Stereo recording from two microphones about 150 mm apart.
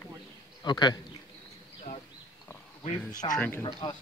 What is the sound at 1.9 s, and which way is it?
Speech, 55° left (ahead or behind).